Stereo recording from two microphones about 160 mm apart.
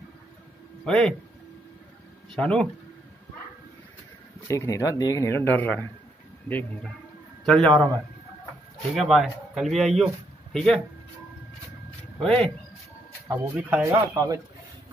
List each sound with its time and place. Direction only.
0.8 s speech: 5° left (ahead or behind)
2.3 s speech: 5° left (ahead or behind)
4.5 s speech: 20° left (ahead or behind)
7.4 s speech: 5° left (ahead or behind)
8.9 s speech: centre (ahead or behind)
12.2 s speech: 5° left (ahead or behind)
13.3 s speech: 10° right (ahead or behind)
13.9 s speech: 20° right (ahead or behind)